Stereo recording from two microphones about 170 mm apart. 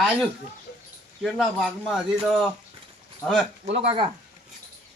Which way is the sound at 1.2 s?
Centre (ahead or behind).